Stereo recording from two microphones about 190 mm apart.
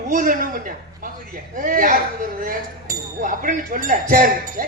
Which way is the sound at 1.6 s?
45° right (ahead or behind).